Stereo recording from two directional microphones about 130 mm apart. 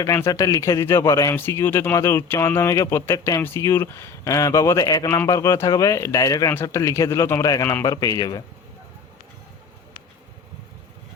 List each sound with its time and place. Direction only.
0.0 s speech: 25° left (ahead or behind)